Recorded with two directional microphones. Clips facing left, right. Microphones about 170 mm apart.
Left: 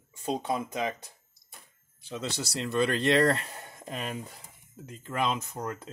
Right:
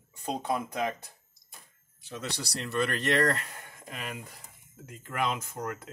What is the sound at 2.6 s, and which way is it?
Speech, 20° left (ahead or behind).